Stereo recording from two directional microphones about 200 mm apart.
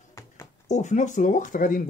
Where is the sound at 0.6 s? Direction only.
35° left (ahead or behind).